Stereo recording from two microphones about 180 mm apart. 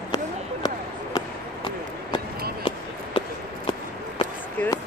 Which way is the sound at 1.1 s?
25° left (ahead or behind).